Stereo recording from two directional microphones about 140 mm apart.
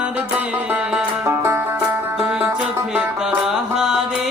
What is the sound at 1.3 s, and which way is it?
Music, 15° right (ahead or behind).